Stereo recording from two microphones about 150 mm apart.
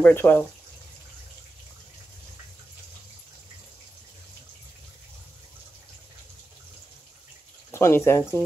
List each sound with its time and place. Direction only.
0.0 s speech: 15° left (ahead or behind)
7.7 s speech: 20° left (ahead or behind)